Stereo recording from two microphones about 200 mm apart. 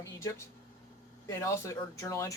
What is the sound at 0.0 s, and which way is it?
Speech, 15° left (ahead or behind).